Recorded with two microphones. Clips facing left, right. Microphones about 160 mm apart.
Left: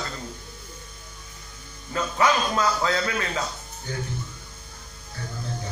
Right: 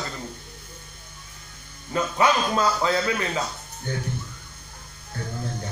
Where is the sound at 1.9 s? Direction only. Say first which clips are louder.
Right 1 dB; 15° right (ahead or behind).